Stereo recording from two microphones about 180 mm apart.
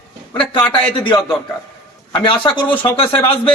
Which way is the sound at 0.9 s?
25° left (ahead or behind).